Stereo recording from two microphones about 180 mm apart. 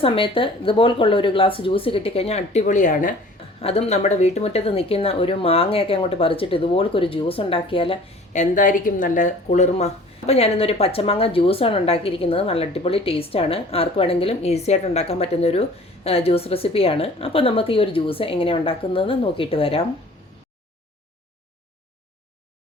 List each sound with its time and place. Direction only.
0.0 s a woman's voice: 30° left (ahead or behind); by 3.2 s 45° left (ahead or behind)
3.6 s speech: 35° left (ahead or behind)